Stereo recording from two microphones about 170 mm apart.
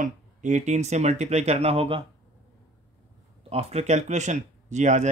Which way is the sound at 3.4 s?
35° right (ahead or behind).